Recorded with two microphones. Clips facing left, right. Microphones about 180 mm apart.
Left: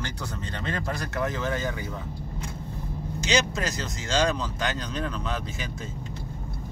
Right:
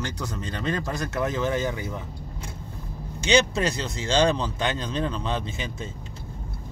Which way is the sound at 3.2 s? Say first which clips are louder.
Right 5 dB; 30° right (ahead or behind).